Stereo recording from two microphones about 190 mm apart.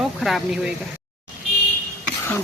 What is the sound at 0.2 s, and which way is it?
Speech, centre (ahead or behind).